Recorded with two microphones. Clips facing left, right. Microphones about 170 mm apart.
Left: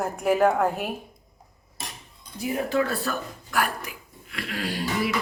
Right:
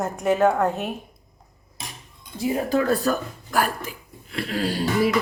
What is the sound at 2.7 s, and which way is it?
Speech, 40° right (ahead or behind).